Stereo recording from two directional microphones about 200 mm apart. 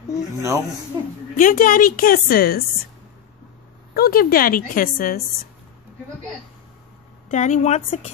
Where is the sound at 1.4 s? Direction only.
45° left (ahead or behind).